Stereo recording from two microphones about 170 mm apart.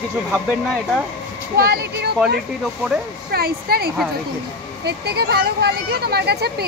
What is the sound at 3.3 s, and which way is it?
Speech, 65° right (ahead or behind).